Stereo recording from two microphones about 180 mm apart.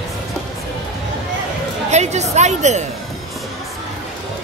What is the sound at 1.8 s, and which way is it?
Speech, 40° right (ahead or behind).